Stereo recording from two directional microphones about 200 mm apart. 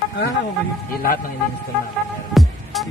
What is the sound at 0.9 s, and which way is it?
Speech, 45° left (ahead or behind).